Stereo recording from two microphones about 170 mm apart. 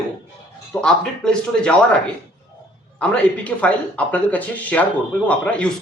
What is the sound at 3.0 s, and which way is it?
A man's voice, 5° left (ahead or behind).